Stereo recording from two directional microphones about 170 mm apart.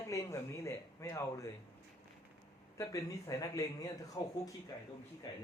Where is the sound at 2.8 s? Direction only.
20° left (ahead or behind).